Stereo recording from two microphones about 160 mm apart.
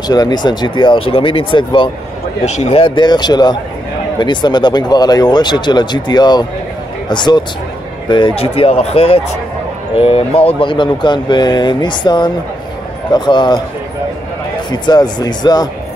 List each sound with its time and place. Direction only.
0.1 s speech: 25° left (ahead or behind)
2.4 s speech: 40° left (ahead or behind)
14.7 s speech: 25° left (ahead or behind)